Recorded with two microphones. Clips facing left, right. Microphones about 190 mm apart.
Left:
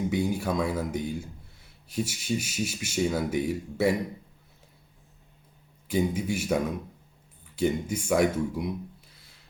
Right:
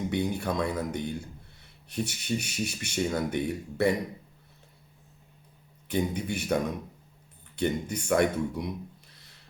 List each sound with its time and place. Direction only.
0.1 s speech: 5° left (ahead or behind)
5.9 s speech: 5° left (ahead or behind)